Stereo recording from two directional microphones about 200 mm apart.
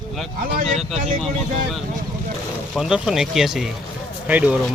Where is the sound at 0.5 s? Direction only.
35° right (ahead or behind).